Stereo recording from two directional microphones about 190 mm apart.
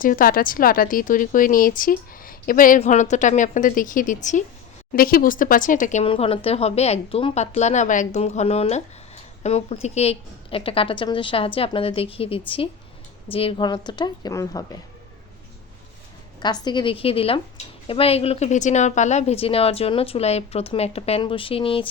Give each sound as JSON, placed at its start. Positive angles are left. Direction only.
{"t": 0.0, "sound": "a woman's voice", "side_deg": 45}
{"t": 16.4, "sound": "a woman's voice", "side_deg": 20}